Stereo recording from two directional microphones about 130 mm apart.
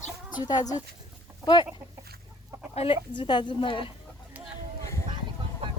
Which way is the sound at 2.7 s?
45° left (ahead or behind).